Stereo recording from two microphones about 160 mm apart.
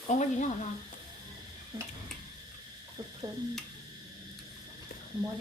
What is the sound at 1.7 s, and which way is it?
Tick-tock, 20° right (ahead or behind).